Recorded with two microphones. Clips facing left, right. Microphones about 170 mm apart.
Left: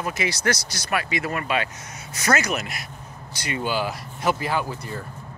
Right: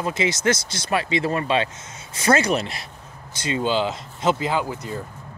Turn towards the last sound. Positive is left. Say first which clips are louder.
# right 2 dB
turn(degrees=-15)  # may be behind; listen again after turning